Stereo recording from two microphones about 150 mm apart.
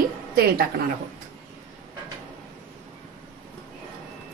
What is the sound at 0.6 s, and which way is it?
Speech, 85° right.